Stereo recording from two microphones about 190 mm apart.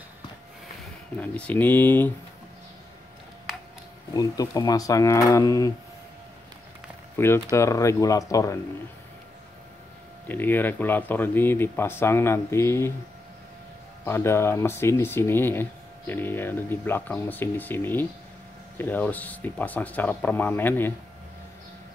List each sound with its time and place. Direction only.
1.2 s speech: 10° left (ahead or behind)
4.1 s speech: 20° left (ahead or behind)
7.2 s speech: 10° left (ahead or behind)
10.2 s speech: 10° left (ahead or behind)
14.0 s speech: 15° left (ahead or behind)